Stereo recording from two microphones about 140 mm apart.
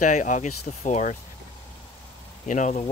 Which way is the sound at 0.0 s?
60° left (ahead or behind).